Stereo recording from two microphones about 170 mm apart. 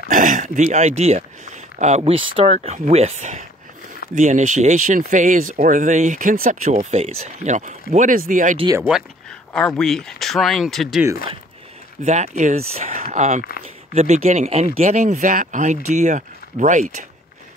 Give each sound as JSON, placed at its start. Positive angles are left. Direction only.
{"t": 0.1, "sound": "speech", "side_deg": -50}
{"t": 8.7, "sound": "speech", "side_deg": -5}
{"t": 12.0, "sound": "speech", "side_deg": -45}